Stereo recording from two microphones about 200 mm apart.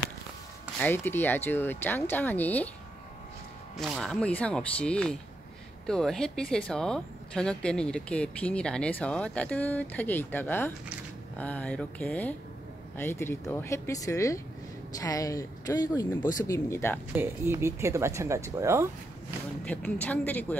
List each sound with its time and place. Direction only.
0.7 s speech: 10° left (ahead or behind)
3.7 s a woman's voice: centre (ahead or behind)
17.1 s speech: 10° right (ahead or behind)
19.6 s speech: 5° left (ahead or behind)